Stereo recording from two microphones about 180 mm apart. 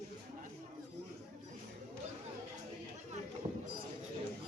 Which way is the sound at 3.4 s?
25° right (ahead or behind).